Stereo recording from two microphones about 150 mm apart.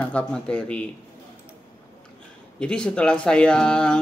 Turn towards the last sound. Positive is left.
turn(degrees=5)  # may be behind; listen again after turning